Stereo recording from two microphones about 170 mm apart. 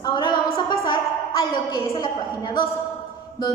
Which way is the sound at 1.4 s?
20° left (ahead or behind).